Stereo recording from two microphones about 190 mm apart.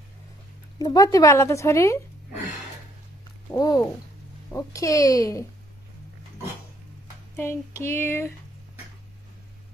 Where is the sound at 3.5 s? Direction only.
20° left (ahead or behind).